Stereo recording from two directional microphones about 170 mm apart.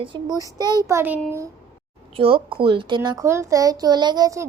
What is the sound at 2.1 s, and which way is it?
A woman's voice, 30° right (ahead or behind).